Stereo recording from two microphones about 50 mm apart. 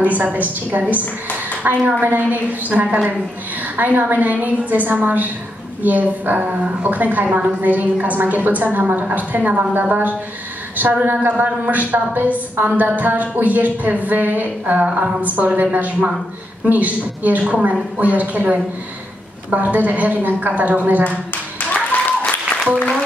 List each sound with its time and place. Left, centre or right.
0.0 s a woman's voice: right
21.9 s applause: left